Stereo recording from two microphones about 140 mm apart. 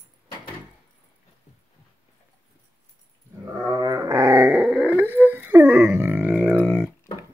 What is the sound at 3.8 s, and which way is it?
Dog, 25° right (ahead or behind).